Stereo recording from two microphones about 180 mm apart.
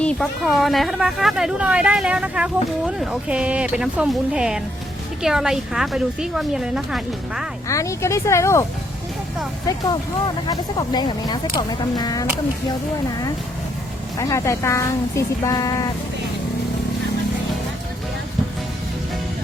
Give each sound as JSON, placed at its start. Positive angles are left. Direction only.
{"t": 0.0, "sound": "speech", "side_deg": 0}
{"t": 7.7, "sound": "speech", "side_deg": 15}
{"t": 9.6, "sound": "speech", "side_deg": 25}
{"t": 14.2, "sound": "speech", "side_deg": 15}